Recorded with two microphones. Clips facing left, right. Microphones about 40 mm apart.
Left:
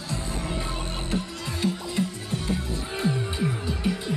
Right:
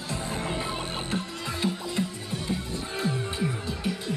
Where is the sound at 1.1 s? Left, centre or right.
Centre.